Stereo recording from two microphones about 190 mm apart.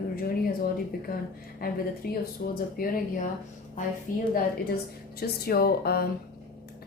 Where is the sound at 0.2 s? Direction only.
50° left (ahead or behind).